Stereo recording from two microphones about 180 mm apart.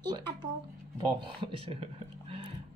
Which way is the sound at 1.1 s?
25° right (ahead or behind).